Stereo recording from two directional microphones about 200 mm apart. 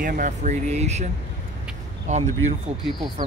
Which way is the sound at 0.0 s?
40° right (ahead or behind).